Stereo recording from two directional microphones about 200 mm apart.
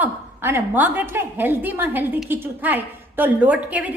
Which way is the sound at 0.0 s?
10° right (ahead or behind).